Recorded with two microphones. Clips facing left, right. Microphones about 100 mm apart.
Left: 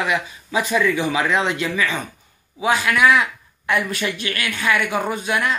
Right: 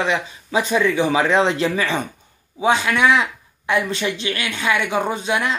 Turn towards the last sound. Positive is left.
turn(degrees=-20)  # may be behind; listen again after turning